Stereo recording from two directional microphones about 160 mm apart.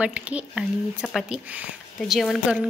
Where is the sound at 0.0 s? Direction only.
5° right (ahead or behind).